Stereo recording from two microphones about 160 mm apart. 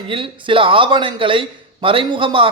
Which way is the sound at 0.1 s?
35° right (ahead or behind).